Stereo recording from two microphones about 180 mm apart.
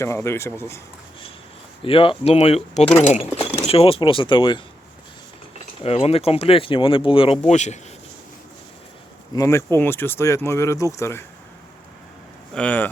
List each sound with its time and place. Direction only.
0.0 s speech: 15° left (ahead or behind)
1.8 s speech: 30° left (ahead or behind)
5.8 s speech: 35° left (ahead or behind)
9.3 s speech: 15° left (ahead or behind)
12.5 s speech: 10° left (ahead or behind)